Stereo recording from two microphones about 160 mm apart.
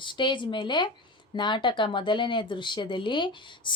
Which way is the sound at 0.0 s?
30° left (ahead or behind).